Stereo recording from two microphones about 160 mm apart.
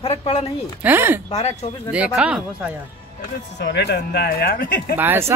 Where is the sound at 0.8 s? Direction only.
15° right (ahead or behind).